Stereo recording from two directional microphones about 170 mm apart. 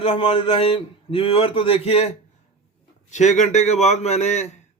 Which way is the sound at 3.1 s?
45° left (ahead or behind).